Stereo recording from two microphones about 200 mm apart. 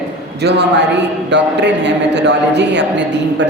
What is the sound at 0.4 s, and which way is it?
A man's voice, 55° right (ahead or behind).